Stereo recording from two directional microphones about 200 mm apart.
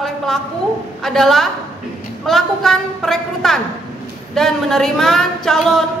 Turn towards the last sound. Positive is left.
turn(degrees=0)  # may be behind; listen again after turning